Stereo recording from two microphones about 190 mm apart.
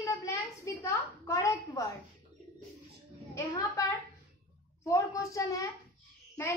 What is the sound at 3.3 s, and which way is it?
A child's voice, 15° left (ahead or behind).